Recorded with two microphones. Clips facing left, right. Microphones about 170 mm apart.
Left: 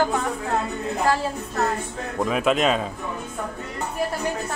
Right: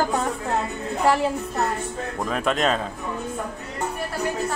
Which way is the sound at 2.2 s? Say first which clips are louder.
Left 2 dB; 5° left (ahead or behind).